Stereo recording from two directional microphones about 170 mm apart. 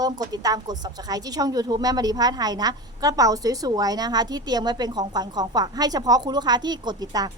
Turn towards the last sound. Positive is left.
turn(degrees=-20)  # may be behind; listen again after turning